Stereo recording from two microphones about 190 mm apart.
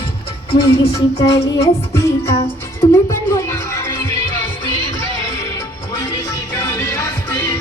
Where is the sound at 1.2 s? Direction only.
20° left (ahead or behind).